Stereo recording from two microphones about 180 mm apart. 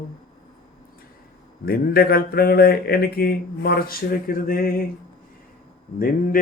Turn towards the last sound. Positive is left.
turn(degrees=50)  # may be behind; listen again after turning